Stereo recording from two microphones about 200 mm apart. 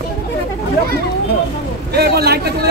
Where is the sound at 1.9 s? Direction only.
50° right (ahead or behind).